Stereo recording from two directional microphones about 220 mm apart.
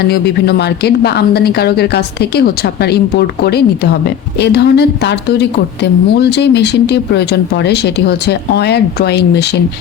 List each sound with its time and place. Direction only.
0.0 s a woman's voice: 45° left (ahead or behind)